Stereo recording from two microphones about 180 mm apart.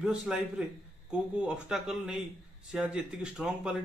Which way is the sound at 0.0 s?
5° right (ahead or behind).